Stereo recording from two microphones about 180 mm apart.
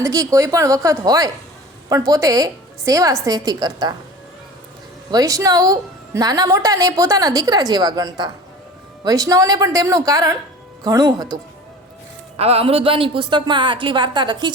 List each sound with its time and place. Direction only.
0.0 s a woman's voice: 20° right (ahead or behind)
5.1 s a woman's voice: 20° right (ahead or behind)
12.4 s a woman's voice: 35° right (ahead or behind)